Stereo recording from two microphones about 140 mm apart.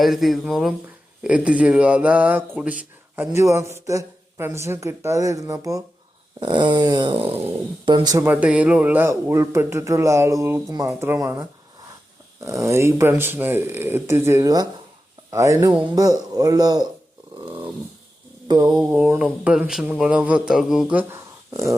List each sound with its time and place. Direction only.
0.0 s speech: centre (ahead or behind); by 5.8 s 25° right (ahead or behind)
6.4 s a sound: 35° right (ahead or behind)
8.2 s speech: 10° right (ahead or behind); by 16.9 s 30° right (ahead or behind)
18.4 s speech: 30° right (ahead or behind)
18.8 s speech: 10° right (ahead or behind)